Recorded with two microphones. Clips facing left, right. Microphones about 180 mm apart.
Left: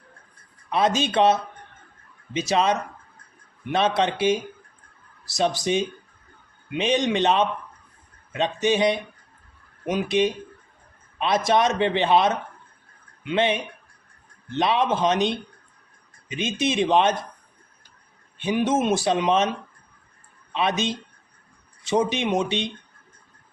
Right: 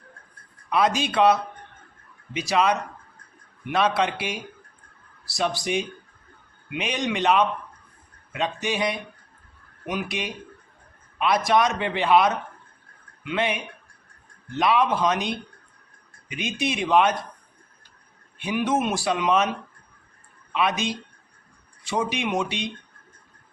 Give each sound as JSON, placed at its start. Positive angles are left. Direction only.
{"t": 0.7, "sound": "a man's voice", "side_deg": 25}
{"t": 18.3, "sound": "a man's voice", "side_deg": 20}
{"t": 20.5, "sound": "a woman's voice", "side_deg": 25}